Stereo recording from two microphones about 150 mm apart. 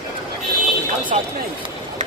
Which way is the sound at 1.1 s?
55° right (ahead or behind).